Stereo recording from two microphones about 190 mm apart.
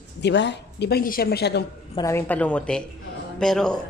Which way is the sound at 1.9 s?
15° left (ahead or behind).